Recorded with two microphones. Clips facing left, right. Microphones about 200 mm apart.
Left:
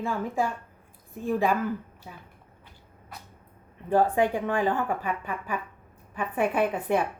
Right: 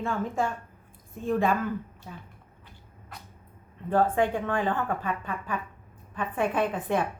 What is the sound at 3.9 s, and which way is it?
A woman's voice, 10° left (ahead or behind).